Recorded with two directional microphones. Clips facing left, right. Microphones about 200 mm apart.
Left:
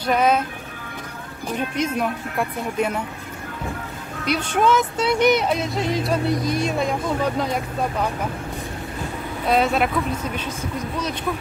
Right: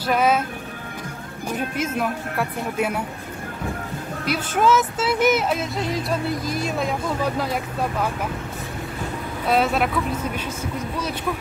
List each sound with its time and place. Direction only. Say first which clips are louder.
0.0 s speech: left 1 dB; 5° right (ahead or behind)
1.8 s speech: left 3 dB; 5° right (ahead or behind)
4.3 s speech: even; 5° right (ahead or behind)
9.5 s speech: left 1 dB; centre (ahead or behind)